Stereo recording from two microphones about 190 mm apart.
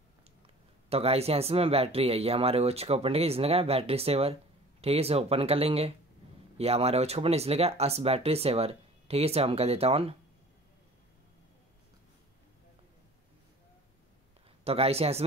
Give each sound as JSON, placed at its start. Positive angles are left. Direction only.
{"t": 0.8, "sound": "speech", "side_deg": -30}
{"t": 14.6, "sound": "speech", "side_deg": -30}